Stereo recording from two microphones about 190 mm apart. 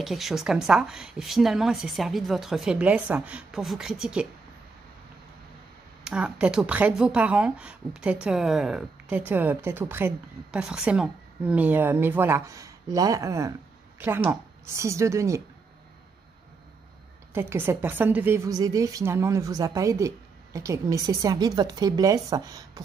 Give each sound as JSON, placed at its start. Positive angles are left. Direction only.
{"t": 0.0, "sound": "a woman's voice", "side_deg": 0}
{"t": 6.0, "sound": "speech", "side_deg": -5}
{"t": 17.3, "sound": "speech", "side_deg": -10}